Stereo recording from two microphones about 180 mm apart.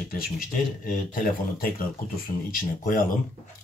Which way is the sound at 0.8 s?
50° left (ahead or behind).